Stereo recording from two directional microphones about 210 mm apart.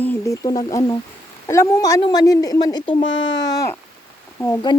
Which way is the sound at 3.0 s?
60° left (ahead or behind).